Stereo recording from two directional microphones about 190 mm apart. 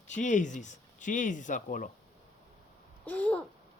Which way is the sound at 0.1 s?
40° left (ahead or behind).